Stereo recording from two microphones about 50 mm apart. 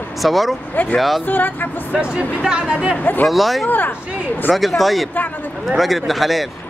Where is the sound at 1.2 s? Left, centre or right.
Left.